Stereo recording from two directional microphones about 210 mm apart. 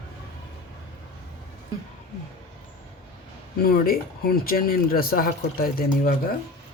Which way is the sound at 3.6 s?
45° left (ahead or behind).